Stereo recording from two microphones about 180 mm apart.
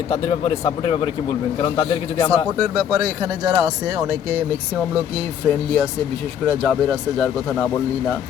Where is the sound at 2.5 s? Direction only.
20° right (ahead or behind).